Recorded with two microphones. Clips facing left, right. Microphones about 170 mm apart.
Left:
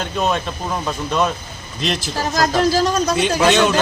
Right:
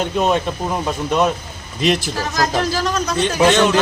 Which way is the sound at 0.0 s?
15° right (ahead or behind).